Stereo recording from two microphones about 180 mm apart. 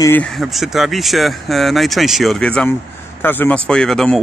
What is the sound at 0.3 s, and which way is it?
Speech, centre (ahead or behind).